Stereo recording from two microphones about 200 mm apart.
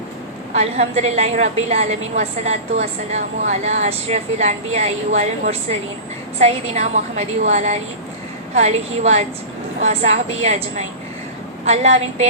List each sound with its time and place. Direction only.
0.5 s a woman's voice: 35° right (ahead or behind)